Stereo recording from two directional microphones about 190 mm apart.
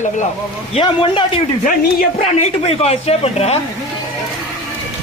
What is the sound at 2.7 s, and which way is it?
Speech, 30° left (ahead or behind).